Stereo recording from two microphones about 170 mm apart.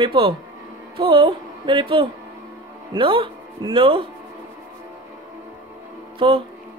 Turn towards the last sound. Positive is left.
turn(degrees=-30)  # may be behind; listen again after turning